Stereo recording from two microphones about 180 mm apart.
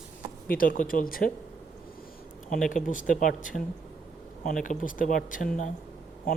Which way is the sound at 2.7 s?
45° left (ahead or behind).